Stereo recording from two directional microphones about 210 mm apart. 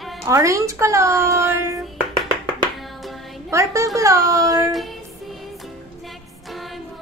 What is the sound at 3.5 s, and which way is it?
Speech, 15° right (ahead or behind).